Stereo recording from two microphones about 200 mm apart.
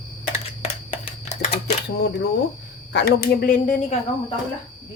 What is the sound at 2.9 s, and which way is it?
Speech, 50° left (ahead or behind).